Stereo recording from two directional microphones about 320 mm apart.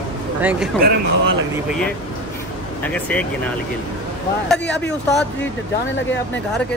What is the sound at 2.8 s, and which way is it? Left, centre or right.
Speech, centre.